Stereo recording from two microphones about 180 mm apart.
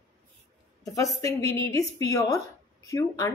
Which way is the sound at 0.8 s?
20° left (ahead or behind).